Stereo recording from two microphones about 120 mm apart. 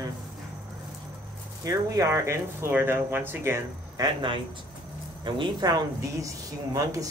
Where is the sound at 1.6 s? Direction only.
30° right (ahead or behind).